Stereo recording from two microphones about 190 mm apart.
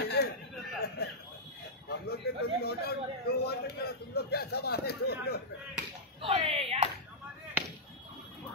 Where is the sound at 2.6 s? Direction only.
55° left (ahead or behind).